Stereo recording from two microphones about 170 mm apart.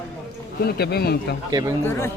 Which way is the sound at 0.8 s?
70° left (ahead or behind).